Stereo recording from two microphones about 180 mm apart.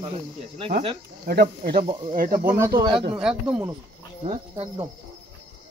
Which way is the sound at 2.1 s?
50° right (ahead or behind).